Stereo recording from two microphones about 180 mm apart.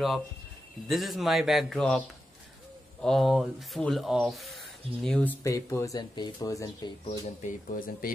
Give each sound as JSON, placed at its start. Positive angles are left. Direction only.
{"t": 0.8, "sound": "speech", "side_deg": 0}
{"t": 7.4, "sound": "speech", "side_deg": 50}